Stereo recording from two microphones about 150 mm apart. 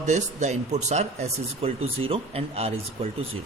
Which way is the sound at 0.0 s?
50° right (ahead or behind).